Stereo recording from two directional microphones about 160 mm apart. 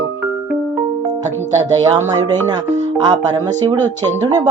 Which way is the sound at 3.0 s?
25° right (ahead or behind).